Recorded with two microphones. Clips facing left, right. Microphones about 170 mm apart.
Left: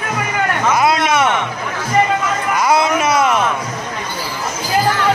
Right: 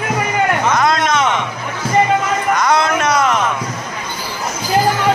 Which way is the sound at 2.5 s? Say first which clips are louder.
Left 2 dB; 5° left (ahead or behind).